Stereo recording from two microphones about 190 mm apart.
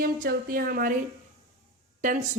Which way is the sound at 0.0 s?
50° right (ahead or behind).